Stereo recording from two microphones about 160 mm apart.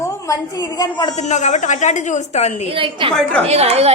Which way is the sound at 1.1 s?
45° left (ahead or behind).